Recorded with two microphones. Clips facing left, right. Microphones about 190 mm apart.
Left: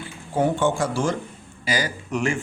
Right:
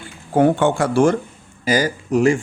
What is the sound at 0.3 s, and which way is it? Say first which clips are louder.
Speech: right 6 dB; 65° right (ahead or behind).